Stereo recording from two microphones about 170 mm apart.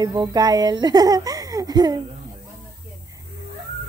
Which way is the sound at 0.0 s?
25° right (ahead or behind).